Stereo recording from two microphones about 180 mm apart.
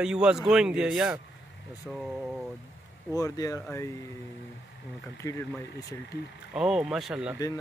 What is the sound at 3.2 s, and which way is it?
Speech, 20° left (ahead or behind).